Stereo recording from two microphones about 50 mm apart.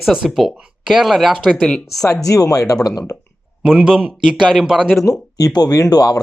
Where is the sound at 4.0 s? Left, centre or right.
Right.